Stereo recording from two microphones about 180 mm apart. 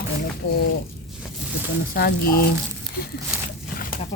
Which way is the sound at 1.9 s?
55° left (ahead or behind).